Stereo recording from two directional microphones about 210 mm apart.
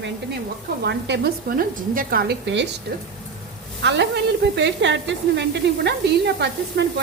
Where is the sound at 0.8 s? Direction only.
50° right (ahead or behind).